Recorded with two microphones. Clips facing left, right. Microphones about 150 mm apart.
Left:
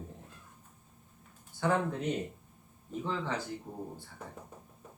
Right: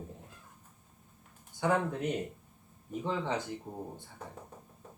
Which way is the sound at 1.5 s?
10° right (ahead or behind).